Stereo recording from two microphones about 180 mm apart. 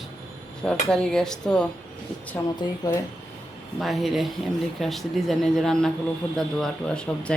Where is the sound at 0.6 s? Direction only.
5° left (ahead or behind).